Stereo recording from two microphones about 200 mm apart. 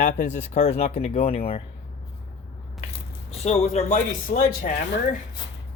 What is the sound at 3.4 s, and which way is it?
Speech, 30° left (ahead or behind).